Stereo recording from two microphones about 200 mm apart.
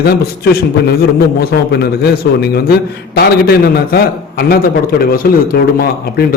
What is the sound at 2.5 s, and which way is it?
A man's voice, 50° left (ahead or behind).